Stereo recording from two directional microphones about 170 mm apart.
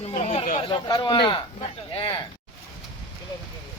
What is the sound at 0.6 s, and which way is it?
Speech, 25° left (ahead or behind).